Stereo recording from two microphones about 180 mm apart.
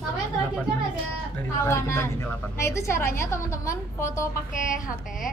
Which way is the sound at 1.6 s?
15° left (ahead or behind).